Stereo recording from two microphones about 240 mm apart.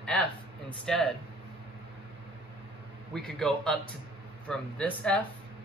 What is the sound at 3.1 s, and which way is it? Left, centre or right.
Speech, centre.